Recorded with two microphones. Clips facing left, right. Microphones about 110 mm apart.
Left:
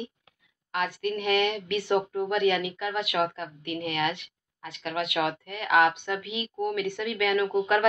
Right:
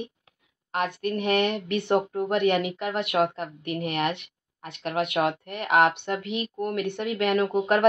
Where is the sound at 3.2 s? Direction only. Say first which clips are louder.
Right 3 dB; 45° right (ahead or behind).